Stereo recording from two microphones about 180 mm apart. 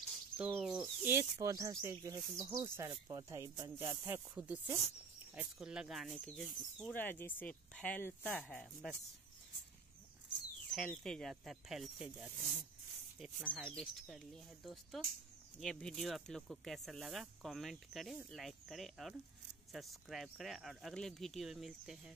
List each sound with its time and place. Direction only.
0.4 s speech: 5° right (ahead or behind)
10.7 s speech: 5° left (ahead or behind)